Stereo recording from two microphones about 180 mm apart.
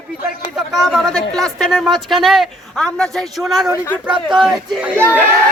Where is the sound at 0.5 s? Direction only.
Centre (ahead or behind).